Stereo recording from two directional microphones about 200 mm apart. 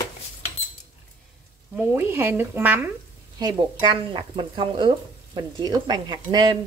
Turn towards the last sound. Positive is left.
turn(degrees=-20)  # may be behind; listen again after turning